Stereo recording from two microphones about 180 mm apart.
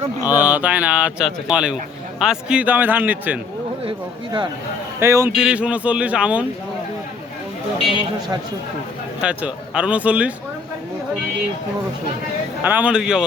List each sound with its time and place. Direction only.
0.3 s a man's voice: 10° right (ahead or behind)
3.8 s a sound: 25° right (ahead or behind)
4.9 s a man's voice: 15° right (ahead or behind)
9.2 s a man's voice: 5° right (ahead or behind)
12.6 s a man's voice: 10° right (ahead or behind)